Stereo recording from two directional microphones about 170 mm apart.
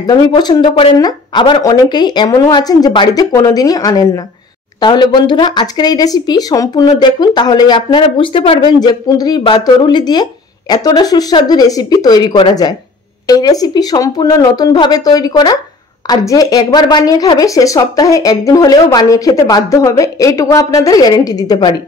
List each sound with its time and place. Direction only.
0.0 s a woman's voice: 25° left (ahead or behind)